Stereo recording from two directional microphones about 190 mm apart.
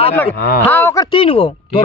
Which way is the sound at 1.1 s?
30° left (ahead or behind).